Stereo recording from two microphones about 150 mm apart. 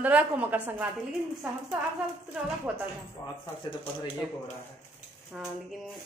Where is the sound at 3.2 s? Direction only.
20° left (ahead or behind).